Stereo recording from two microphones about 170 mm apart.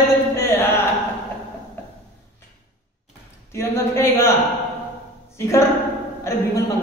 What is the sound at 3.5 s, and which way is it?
Speech, 15° left (ahead or behind).